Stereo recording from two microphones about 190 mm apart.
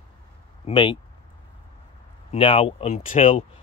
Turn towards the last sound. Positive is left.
turn(degrees=35)  # may be behind; listen again after turning